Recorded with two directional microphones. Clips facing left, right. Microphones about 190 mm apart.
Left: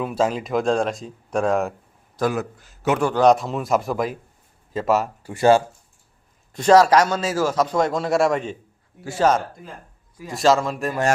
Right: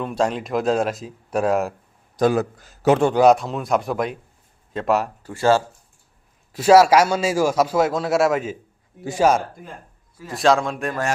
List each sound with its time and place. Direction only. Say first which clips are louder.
0.0 s speech: even; 5° left (ahead or behind)
2.3 s a man's voice: right 5 dB; 35° right (ahead or behind)
3.2 s speech: right 1 dB; centre (ahead or behind)
5.2 s speech: left 4 dB; 15° left (ahead or behind)
6.5 s a man's voice: right 1 dB; 5° right (ahead or behind)
10.3 s speech: even; centre (ahead or behind)